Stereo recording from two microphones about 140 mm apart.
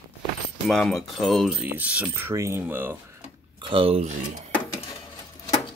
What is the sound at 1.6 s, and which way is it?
Mechanisms, 10° right (ahead or behind).